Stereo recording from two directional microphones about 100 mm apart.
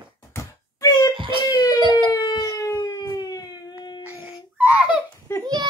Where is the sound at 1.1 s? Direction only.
60° right (ahead or behind).